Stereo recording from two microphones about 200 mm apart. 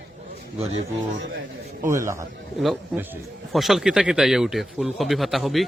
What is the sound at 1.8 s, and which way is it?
Speech, 15° right (ahead or behind).